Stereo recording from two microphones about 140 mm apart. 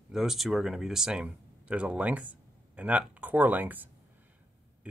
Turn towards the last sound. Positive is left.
turn(degrees=-10)  # may be behind; listen again after turning